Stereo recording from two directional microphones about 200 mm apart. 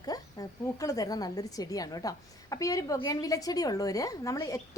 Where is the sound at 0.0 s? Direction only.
20° left (ahead or behind).